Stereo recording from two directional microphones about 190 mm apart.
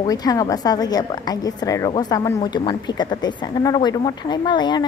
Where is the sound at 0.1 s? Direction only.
20° left (ahead or behind).